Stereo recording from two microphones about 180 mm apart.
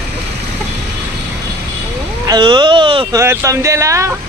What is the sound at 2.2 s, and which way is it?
Speech, 25° right (ahead or behind).